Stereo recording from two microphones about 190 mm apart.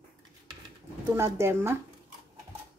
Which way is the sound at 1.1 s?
15° right (ahead or behind).